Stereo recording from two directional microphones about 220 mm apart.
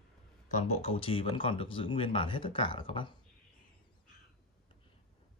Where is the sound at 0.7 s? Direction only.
25° left (ahead or behind).